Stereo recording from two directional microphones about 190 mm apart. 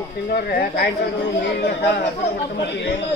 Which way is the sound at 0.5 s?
55° left (ahead or behind).